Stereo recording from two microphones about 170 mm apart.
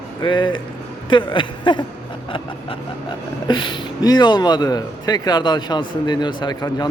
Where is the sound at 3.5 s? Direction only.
25° left (ahead or behind).